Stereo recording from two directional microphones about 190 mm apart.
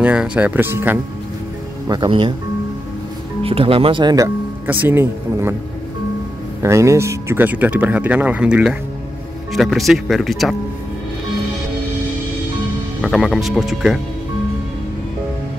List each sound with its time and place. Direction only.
0.0 s speech: 5° right (ahead or behind)
1.9 s speech: 25° right (ahead or behind)
3.4 s speech: 30° right (ahead or behind); by 5.6 s 10° right (ahead or behind)
6.6 s speech: 15° right (ahead or behind); by 10.5 s centre (ahead or behind)
13.0 s speech: centre (ahead or behind)